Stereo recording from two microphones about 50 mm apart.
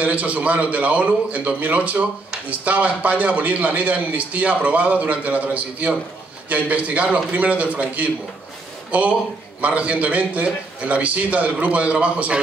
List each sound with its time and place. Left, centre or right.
0.0 s a man's voice: right